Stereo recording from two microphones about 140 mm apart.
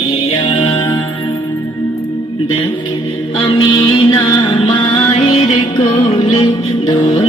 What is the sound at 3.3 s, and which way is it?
Mantra, 35° left (ahead or behind).